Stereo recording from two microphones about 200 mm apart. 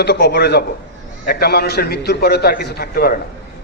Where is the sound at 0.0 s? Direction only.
55° left (ahead or behind).